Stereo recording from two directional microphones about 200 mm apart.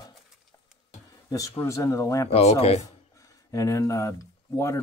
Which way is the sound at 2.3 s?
30° left (ahead or behind).